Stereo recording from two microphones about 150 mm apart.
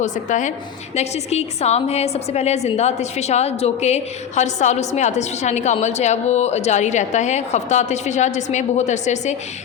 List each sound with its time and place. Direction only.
0.0 s a woman's voice: 55° left (ahead or behind)